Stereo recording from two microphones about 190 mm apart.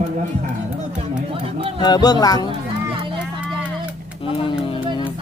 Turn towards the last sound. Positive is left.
turn(degrees=30)  # may be behind; listen again after turning